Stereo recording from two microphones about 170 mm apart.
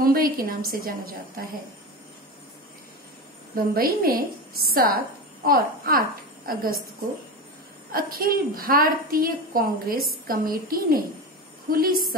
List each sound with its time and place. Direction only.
0.0 s a woman's voice: 60° right (ahead or behind)
3.5 s a woman's voice: 60° right (ahead or behind)
7.9 s a woman's voice: 60° right (ahead or behind)